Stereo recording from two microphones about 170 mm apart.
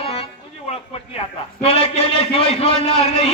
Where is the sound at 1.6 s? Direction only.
35° left (ahead or behind).